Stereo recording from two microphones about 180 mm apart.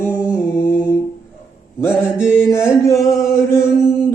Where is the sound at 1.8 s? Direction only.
15° left (ahead or behind).